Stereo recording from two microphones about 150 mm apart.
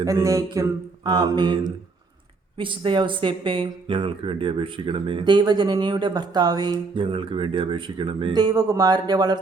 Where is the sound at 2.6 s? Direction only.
35° right (ahead or behind).